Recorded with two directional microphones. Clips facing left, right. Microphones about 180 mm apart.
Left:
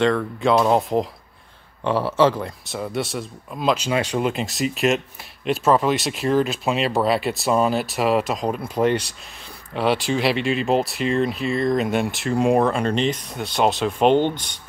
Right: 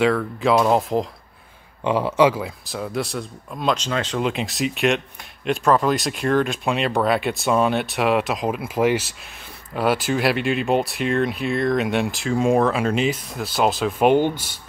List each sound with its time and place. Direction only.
0.0 s speech: centre (ahead or behind)
1.9 s speech: 15° right (ahead or behind); by 4.3 s 10° left (ahead or behind)
4.3 s speech: centre (ahead or behind)